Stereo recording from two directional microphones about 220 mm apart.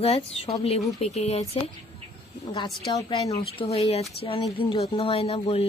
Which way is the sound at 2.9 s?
20° left (ahead or behind).